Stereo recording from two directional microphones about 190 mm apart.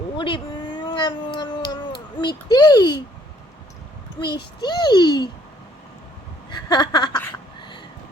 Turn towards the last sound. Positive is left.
turn(degrees=20)  # may be behind; listen again after turning